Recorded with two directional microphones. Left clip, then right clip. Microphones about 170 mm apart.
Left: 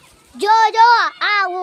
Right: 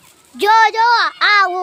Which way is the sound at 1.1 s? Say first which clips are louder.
Right 5 dB; 15° right (ahead or behind).